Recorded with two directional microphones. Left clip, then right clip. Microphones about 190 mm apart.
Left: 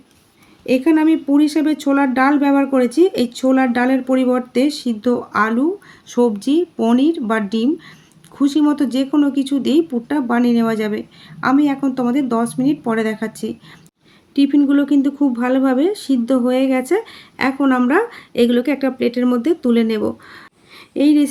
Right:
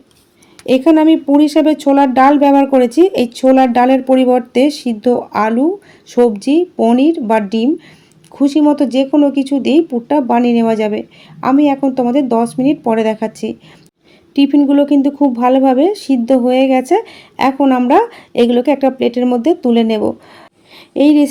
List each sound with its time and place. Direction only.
0.6 s speech: 15° right (ahead or behind)
20.9 s speech: 15° right (ahead or behind)